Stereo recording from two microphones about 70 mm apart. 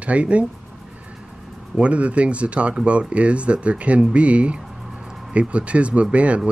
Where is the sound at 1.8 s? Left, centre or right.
Centre.